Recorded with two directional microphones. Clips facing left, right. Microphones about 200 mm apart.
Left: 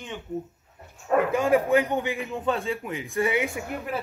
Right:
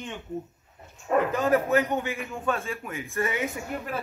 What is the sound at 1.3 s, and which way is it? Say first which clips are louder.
A man's voice: left 3 dB; 10° left (ahead or behind).